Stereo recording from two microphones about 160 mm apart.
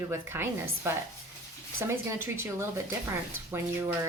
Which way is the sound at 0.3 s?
15° right (ahead or behind).